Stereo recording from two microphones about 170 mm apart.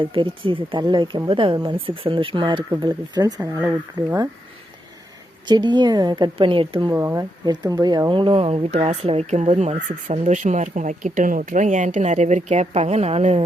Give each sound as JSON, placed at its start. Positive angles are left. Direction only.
{"t": 0.0, "sound": "speech", "side_deg": -30}
{"t": 5.5, "sound": "speech", "side_deg": -25}
{"t": 6.9, "sound": "speech", "side_deg": -15}